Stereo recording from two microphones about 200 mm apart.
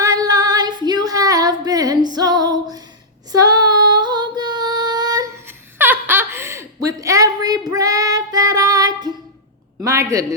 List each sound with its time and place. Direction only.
0.0 s female singing: 20° right (ahead or behind)
5.8 s laughter: 10° right (ahead or behind)
9.8 s a man's voice: 15° right (ahead or behind)